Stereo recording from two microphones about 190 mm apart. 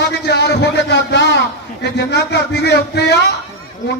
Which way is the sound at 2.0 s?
60° left (ahead or behind).